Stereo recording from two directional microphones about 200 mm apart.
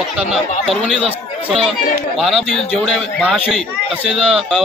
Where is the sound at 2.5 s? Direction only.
Centre (ahead or behind).